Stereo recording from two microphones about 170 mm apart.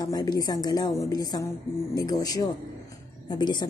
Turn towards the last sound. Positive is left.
turn(degrees=25)  # may be behind; listen again after turning